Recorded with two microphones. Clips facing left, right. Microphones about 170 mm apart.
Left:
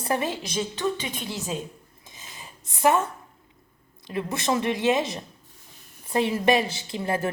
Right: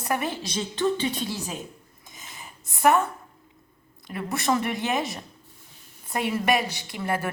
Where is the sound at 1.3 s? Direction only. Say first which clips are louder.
Even; 20° left (ahead or behind).